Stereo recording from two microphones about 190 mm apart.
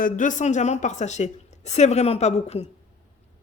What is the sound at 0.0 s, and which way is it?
Speech, 40° left (ahead or behind).